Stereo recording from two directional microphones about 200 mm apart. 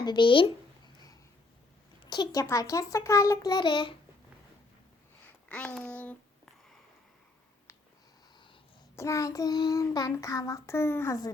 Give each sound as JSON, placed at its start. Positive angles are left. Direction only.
{"t": 0.0, "sound": "speech", "side_deg": 20}
{"t": 2.0, "sound": "child singing", "side_deg": 20}
{"t": 5.2, "sound": "a sound", "side_deg": 5}
{"t": 9.0, "sound": "child singing", "side_deg": 15}